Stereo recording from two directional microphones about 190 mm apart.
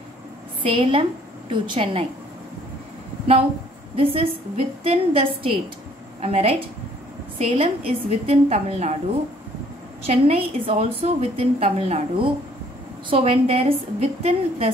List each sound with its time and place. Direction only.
0.6 s a woman's voice: 30° right (ahead or behind)
3.9 s a woman's voice: 30° right (ahead or behind)
10.0 s a woman's voice: 35° right (ahead or behind)